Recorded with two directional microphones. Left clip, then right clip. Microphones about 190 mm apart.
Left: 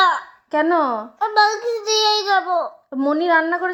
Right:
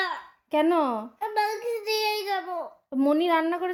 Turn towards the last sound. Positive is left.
turn(degrees=-55)  # may be behind; listen again after turning